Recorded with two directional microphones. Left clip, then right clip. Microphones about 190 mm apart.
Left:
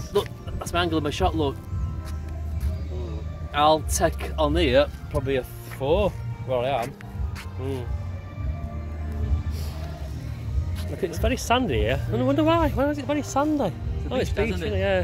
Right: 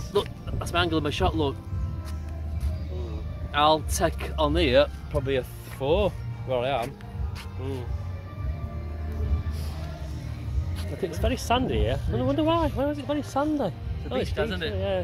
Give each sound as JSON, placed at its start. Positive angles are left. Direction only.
{"t": 0.1, "sound": "speech", "side_deg": 0}
{"t": 3.5, "sound": "speech", "side_deg": 0}
{"t": 10.8, "sound": "speech", "side_deg": 5}
{"t": 14.3, "sound": "a man's voice", "side_deg": -35}
{"t": 14.7, "sound": "speech", "side_deg": 15}